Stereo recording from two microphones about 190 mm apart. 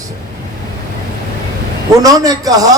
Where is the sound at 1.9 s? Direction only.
20° right (ahead or behind).